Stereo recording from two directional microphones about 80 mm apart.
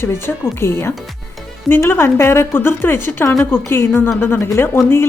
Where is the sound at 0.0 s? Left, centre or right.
Left.